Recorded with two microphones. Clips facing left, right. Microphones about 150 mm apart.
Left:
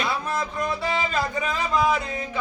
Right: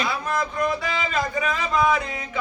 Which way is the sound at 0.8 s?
30° left (ahead or behind).